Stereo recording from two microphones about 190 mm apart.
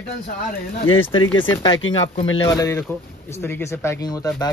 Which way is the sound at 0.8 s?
90° left.